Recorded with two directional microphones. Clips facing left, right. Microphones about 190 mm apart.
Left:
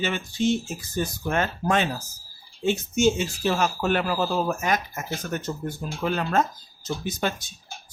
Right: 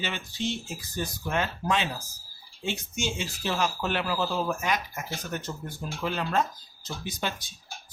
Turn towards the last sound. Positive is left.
turn(degrees=50)  # may be behind; listen again after turning